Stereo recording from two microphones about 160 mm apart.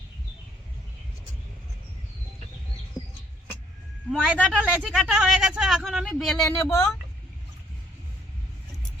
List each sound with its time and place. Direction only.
4.1 s speech: 5° right (ahead or behind)
6.3 s speech: 20° left (ahead or behind)